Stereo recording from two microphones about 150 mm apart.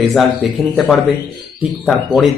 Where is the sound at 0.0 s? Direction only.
Centre (ahead or behind).